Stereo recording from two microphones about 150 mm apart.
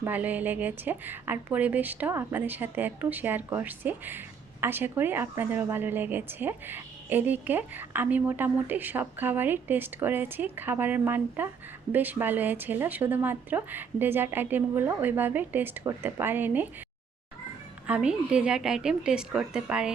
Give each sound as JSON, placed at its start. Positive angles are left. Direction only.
{"t": 0.0, "sound": "a woman's voice", "side_deg": -10}
{"t": 17.8, "sound": "a woman's voice", "side_deg": -5}